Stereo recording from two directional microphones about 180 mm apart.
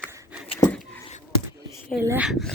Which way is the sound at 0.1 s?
15° right (ahead or behind).